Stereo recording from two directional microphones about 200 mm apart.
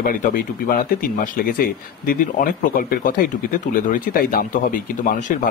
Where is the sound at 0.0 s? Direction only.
45° left (ahead or behind).